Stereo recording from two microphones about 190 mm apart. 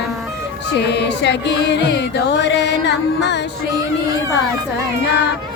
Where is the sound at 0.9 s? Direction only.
65° left (ahead or behind).